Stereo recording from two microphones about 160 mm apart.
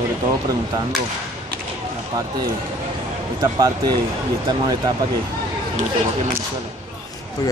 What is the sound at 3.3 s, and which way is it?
A man's voice, 25° right (ahead or behind).